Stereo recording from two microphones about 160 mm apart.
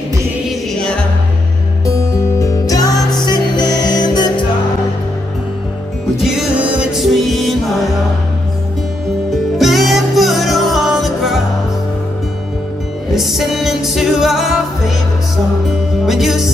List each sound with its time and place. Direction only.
0.5 s music: 5° left (ahead or behind)
1.9 s music: 15° left (ahead or behind)
6.1 s music: centre (ahead or behind)
9.3 s music: centre (ahead or behind)
13.1 s music: centre (ahead or behind)
16.1 s music: centre (ahead or behind)